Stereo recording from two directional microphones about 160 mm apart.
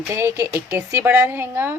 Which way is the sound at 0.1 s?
15° right (ahead or behind).